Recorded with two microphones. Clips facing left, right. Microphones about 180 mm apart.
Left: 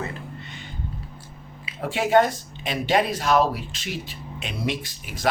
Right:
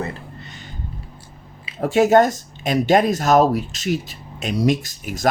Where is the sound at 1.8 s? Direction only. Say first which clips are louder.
Right 5 dB; 45° right (ahead or behind).